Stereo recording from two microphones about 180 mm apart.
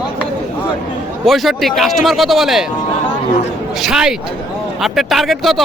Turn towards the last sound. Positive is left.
turn(degrees=0)  # may be behind; listen again after turning